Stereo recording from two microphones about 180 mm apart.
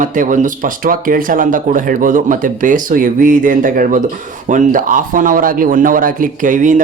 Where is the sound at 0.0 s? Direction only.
45° right (ahead or behind).